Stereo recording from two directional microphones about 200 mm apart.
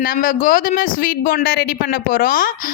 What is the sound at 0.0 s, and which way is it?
A man's voice, 45° left (ahead or behind).